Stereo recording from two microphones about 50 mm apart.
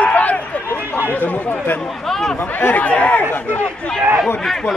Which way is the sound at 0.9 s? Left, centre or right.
Left.